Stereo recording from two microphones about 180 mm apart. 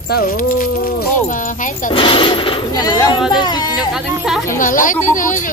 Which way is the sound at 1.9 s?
30° left (ahead or behind).